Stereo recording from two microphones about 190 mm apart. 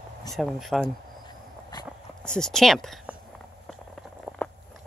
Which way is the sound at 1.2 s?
20° left (ahead or behind).